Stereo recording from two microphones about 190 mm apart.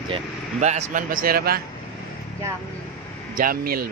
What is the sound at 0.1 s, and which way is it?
Speech, 35° right (ahead or behind).